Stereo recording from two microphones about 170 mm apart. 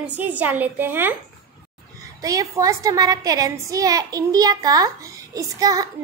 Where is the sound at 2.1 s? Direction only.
20° right (ahead or behind).